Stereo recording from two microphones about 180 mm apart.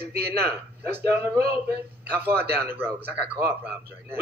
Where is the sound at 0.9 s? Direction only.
15° right (ahead or behind).